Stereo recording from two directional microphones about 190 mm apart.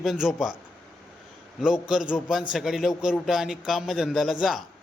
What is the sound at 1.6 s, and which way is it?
A man's voice, 5° right (ahead or behind).